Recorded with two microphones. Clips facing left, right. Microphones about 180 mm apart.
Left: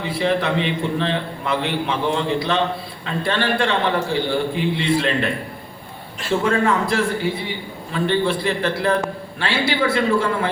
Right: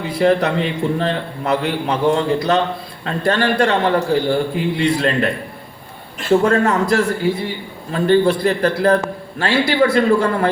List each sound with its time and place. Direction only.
0.1 s a man's voice: 40° right (ahead or behind)
6.4 s a man's voice: 45° right (ahead or behind)